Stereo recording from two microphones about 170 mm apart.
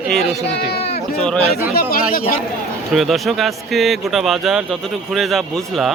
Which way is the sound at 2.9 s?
Centre (ahead or behind).